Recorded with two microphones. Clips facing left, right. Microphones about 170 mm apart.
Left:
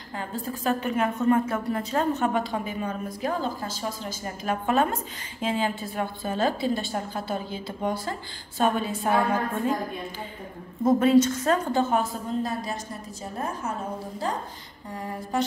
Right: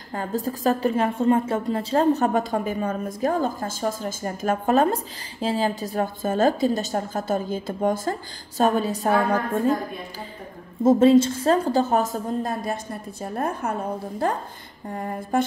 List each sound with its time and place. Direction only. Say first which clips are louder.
0.1 s a woman's voice: right 6 dB; 40° right (ahead or behind)
10.8 s a woman's voice: right 4 dB; 25° right (ahead or behind); by 12.7 s 45° right (ahead or behind)
13.2 s a woman's voice: right 5 dB; 60° right (ahead or behind)